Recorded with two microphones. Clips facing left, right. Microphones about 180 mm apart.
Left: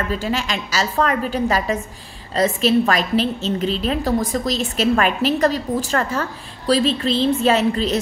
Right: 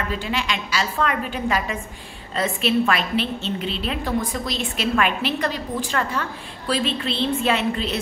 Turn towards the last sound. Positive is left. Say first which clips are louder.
# left 5 dB
turn(degrees=40)  # may be behind; listen again after turning